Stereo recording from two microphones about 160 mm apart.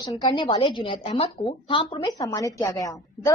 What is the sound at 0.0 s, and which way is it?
A woman's voice, 20° left (ahead or behind).